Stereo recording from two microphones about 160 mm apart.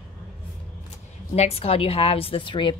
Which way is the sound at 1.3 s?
40° left (ahead or behind).